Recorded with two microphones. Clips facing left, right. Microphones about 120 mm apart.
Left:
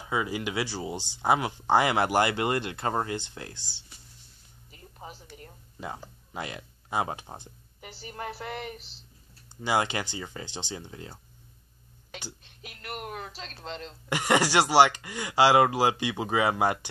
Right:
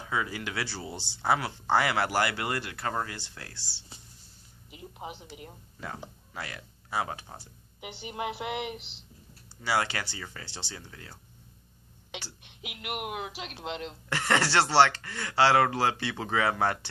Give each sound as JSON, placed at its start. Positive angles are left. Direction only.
{"t": 0.0, "sound": "speech", "side_deg": 20}
{"t": 4.6, "sound": "a sound", "side_deg": -15}
{"t": 5.3, "sound": "speech", "side_deg": -15}
{"t": 5.8, "sound": "speech", "side_deg": 20}
{"t": 7.8, "sound": "speech", "side_deg": -15}
{"t": 9.6, "sound": "speech", "side_deg": 20}
{"t": 12.4, "sound": "speech", "side_deg": -15}
{"t": 14.0, "sound": "speech", "side_deg": 15}